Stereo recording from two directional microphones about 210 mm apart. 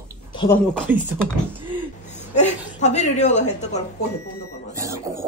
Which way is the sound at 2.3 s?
35° left (ahead or behind).